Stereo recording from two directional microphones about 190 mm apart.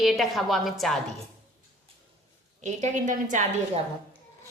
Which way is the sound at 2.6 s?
40° right (ahead or behind).